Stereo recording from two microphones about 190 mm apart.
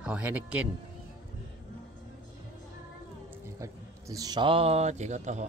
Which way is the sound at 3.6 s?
15° right (ahead or behind).